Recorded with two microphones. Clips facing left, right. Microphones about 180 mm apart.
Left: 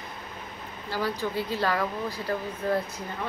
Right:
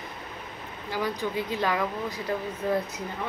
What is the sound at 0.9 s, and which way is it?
Speech, 20° right (ahead or behind).